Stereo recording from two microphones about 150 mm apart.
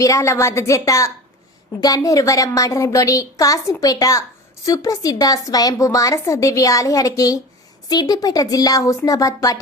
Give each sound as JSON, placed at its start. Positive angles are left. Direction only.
{"t": 0.0, "sound": "a woman's voice", "side_deg": 20}